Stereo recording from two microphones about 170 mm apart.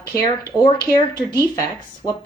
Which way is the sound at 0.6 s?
25° left (ahead or behind).